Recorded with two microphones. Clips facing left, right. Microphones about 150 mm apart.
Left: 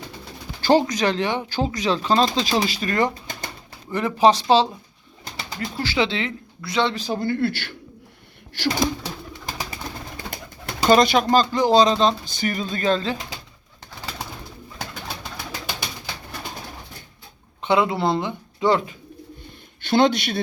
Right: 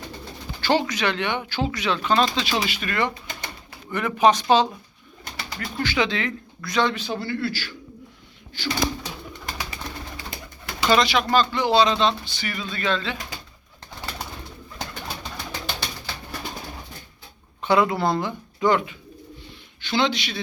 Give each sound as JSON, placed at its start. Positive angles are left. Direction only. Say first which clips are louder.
{"t": 0.6, "sound": "speech", "louder": "left 4 dB", "side_deg": 40}
{"t": 6.9, "sound": "speech", "louder": "left 4 dB", "side_deg": 40}
{"t": 8.5, "sound": "speech", "louder": "left 7 dB", "side_deg": 70}
{"t": 10.8, "sound": "speech", "louder": "left 4 dB", "side_deg": 45}
{"t": 14.8, "sound": "bird", "louder": "even", "side_deg": 10}
{"t": 17.6, "sound": "speech", "louder": "even", "side_deg": 20}
{"t": 19.8, "sound": "speech", "louder": "left 5 dB", "side_deg": 50}